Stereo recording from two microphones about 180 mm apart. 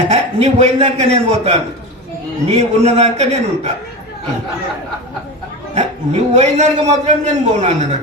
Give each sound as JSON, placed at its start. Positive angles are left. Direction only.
{"t": 0.1, "sound": "a man's voice", "side_deg": -35}
{"t": 5.7, "sound": "a man's voice", "side_deg": -40}